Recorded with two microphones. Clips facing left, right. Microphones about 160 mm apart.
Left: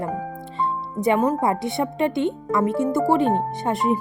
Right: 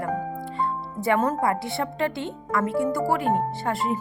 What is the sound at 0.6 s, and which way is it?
Music, 20° left (ahead or behind).